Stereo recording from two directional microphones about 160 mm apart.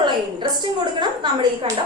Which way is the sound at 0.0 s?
30° right (ahead or behind).